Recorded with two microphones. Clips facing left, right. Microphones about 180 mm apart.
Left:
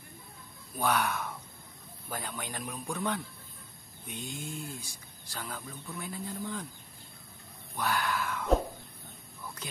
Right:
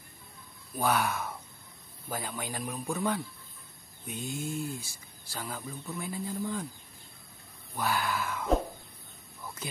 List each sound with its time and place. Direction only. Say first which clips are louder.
0.7 s a man's voice: right 1 dB; 5° right (ahead or behind)
4.1 s a sound: right 5 dB; 45° right (ahead or behind)
4.7 s speech: right 2 dB; 5° right (ahead or behind)
7.7 s speech: right 1 dB; 10° right (ahead or behind)